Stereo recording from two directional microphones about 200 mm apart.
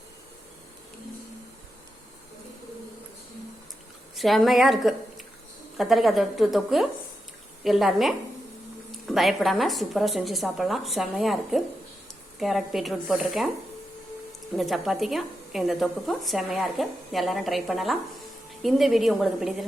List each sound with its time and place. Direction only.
4.1 s a woman's voice: centre (ahead or behind)
14.5 s a woman's voice: centre (ahead or behind)